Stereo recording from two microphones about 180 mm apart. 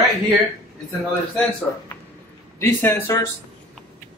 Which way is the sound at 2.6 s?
10° left (ahead or behind).